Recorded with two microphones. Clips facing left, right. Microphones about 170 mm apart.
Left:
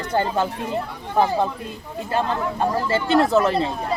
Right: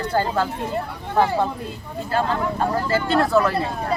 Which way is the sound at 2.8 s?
25° left (ahead or behind).